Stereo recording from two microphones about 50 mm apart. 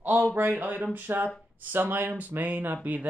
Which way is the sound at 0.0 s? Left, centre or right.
Right.